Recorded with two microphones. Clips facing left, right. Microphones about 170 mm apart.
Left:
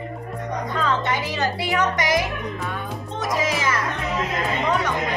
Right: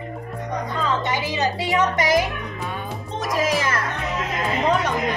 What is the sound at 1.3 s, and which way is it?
Speech, 20° right (ahead or behind).